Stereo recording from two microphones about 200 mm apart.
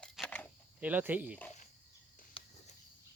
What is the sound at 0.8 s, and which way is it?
Speech, 10° right (ahead or behind).